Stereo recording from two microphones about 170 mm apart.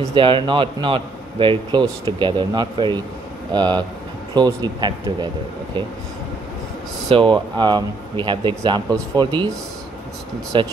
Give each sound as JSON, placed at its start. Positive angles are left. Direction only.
{"t": 0.1, "sound": "speech", "side_deg": -30}
{"t": 7.1, "sound": "speech", "side_deg": -30}
{"t": 10.5, "sound": "speech", "side_deg": -30}